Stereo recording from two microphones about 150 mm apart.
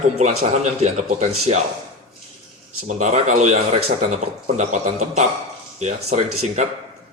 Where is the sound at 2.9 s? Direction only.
50° right (ahead or behind).